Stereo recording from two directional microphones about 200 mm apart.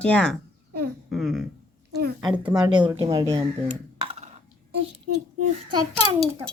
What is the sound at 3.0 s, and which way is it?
Speech, 20° right (ahead or behind).